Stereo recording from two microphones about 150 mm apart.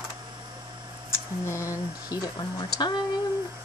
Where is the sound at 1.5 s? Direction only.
20° left (ahead or behind).